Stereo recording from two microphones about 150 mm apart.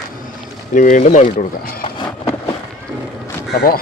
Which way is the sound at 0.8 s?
60° left (ahead or behind).